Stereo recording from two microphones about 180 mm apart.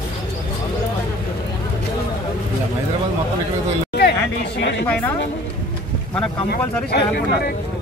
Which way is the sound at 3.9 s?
65° left (ahead or behind).